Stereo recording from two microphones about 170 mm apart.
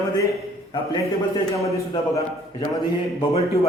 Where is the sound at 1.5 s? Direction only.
20° left (ahead or behind).